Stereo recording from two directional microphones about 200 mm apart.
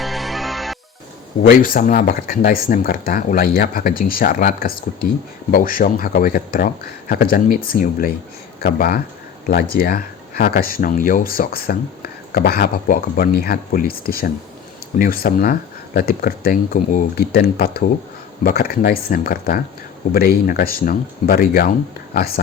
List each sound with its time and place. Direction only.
0.0 s music: centre (ahead or behind)
1.5 s speech: 45° left (ahead or behind)